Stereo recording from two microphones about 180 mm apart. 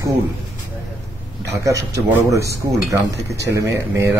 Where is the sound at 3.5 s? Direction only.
15° right (ahead or behind).